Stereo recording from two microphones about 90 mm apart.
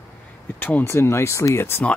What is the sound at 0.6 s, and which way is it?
Speech, 20° left (ahead or behind).